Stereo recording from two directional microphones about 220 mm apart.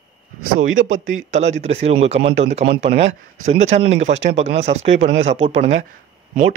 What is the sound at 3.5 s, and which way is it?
Speech, 30° right (ahead or behind).